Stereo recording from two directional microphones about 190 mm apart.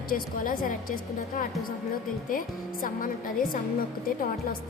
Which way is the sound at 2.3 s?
45° left (ahead or behind).